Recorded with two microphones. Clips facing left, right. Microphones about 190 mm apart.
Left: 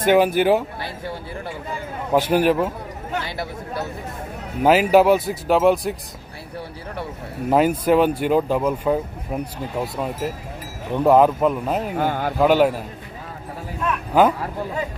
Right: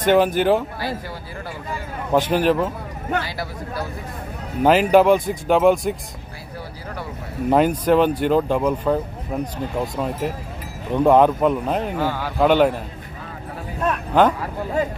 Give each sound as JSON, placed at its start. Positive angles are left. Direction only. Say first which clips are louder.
{"t": 0.0, "sound": "speech", "louder": "even", "side_deg": 10}
{"t": 0.7, "sound": "speech", "louder": "right 3 dB", "side_deg": 25}
{"t": 2.1, "sound": "speech", "louder": "even", "side_deg": 10}
{"t": 3.3, "sound": "speech", "louder": "even", "side_deg": 25}
{"t": 4.6, "sound": "speech", "louder": "even", "side_deg": 5}
{"t": 7.4, "sound": "speech", "louder": "even", "side_deg": 5}
{"t": 12.0, "sound": "speech", "louder": "left 2 dB", "side_deg": 50}
{"t": 12.4, "sound": "speech", "louder": "right 1 dB", "side_deg": 5}
{"t": 14.1, "sound": "speech", "louder": "even", "side_deg": 5}